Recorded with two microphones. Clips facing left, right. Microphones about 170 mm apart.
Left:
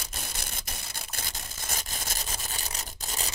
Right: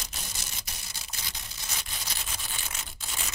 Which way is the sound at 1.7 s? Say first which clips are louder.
Left 3 dB; 45° left (ahead or behind).